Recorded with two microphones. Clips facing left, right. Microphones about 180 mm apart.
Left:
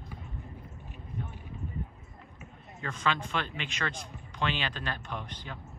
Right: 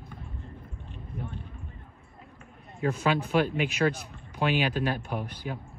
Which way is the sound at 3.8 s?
30° right (ahead or behind).